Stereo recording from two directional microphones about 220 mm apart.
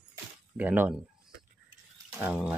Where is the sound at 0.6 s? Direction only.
5° right (ahead or behind).